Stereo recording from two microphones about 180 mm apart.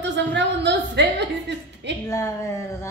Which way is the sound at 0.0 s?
80° right.